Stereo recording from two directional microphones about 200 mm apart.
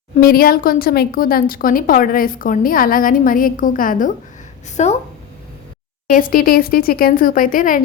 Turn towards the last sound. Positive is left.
turn(degrees=40)  # may be behind; listen again after turning